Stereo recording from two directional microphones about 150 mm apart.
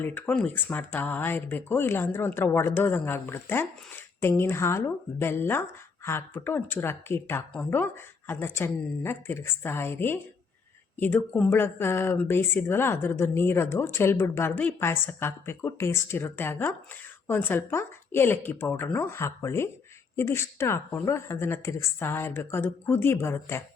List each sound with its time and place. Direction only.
0.0 s speech: 10° left (ahead or behind)